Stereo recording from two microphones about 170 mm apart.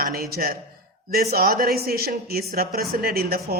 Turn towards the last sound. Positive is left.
turn(degrees=-65)  # may be behind; listen again after turning